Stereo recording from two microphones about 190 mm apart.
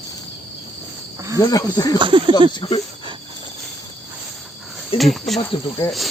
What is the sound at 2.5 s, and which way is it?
Speech, 25° left (ahead or behind).